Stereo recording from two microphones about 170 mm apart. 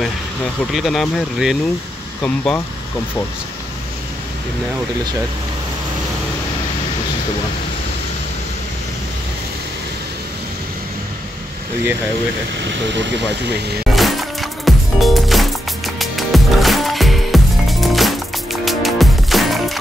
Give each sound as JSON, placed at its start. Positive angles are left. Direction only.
{"t": 0.7, "sound": "speech", "side_deg": 0}
{"t": 13.9, "sound": "music", "side_deg": 0}